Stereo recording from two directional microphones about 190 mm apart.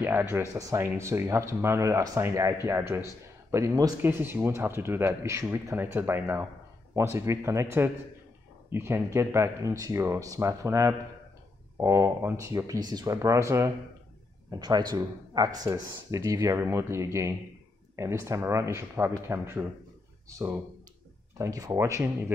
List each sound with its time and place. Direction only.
0.0 s speech: 10° right (ahead or behind)